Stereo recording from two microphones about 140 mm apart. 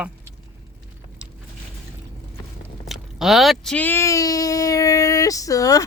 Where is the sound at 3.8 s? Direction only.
20° left (ahead or behind).